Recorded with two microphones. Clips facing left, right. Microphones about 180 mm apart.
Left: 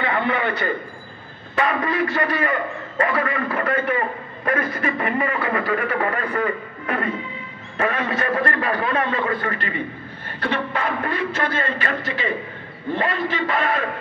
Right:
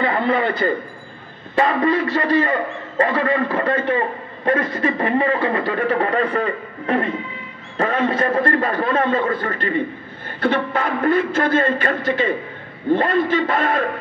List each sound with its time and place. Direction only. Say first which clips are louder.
0.0 s a sound: right 4 dB; 30° right (ahead or behind)
1.5 s a man's voice: right 5 dB; 30° right (ahead or behind)
8.6 s a man's voice: right 3 dB; 40° right (ahead or behind)
10.7 s a man's voice: right 6 dB; 45° right (ahead or behind)
12.9 s a man's voice: right 7 dB; 45° right (ahead or behind)